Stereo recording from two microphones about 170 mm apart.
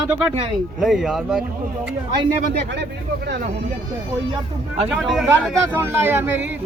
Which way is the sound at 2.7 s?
80° right.